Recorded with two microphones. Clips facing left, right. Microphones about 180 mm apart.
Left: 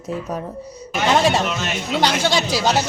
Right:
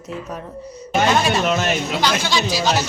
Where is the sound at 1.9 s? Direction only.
65° left (ahead or behind).